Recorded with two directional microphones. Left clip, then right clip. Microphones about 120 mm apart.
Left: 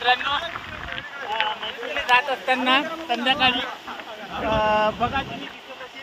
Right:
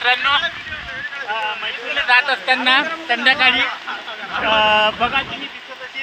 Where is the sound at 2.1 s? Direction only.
10° right (ahead or behind).